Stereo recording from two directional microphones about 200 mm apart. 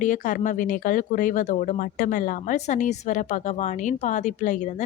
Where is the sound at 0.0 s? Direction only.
40° left (ahead or behind).